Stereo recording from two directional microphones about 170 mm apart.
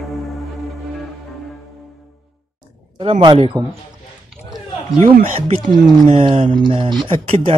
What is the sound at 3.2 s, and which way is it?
Speech, 30° right (ahead or behind).